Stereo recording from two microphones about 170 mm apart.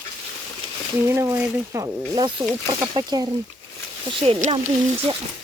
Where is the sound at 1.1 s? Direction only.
15° right (ahead or behind).